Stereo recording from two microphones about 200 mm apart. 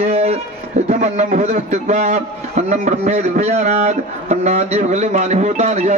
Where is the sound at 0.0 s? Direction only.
35° right (ahead or behind).